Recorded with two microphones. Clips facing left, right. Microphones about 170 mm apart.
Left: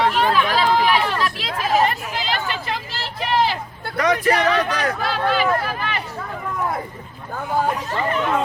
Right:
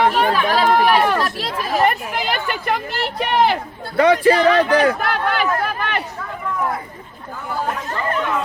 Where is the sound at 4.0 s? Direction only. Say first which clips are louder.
Right 5 dB; 30° right (ahead or behind).